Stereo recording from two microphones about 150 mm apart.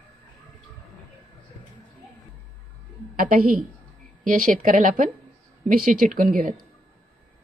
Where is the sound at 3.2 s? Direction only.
70° right (ahead or behind).